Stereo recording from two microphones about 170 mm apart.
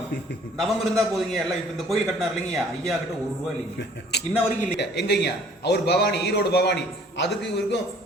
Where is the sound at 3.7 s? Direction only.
75° left (ahead or behind).